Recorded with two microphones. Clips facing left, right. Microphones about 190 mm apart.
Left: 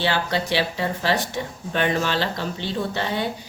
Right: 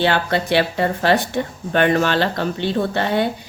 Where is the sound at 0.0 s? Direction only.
55° right (ahead or behind).